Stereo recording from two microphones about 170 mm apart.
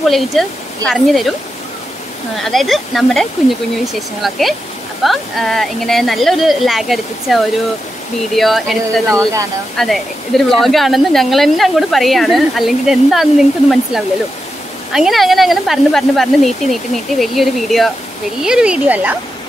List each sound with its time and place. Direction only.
0.0 s a woman's voice: centre (ahead or behind)
2.3 s a woman's voice: centre (ahead or behind)
9.1 s speech: 20° right (ahead or behind)
9.8 s a woman's voice: centre (ahead or behind)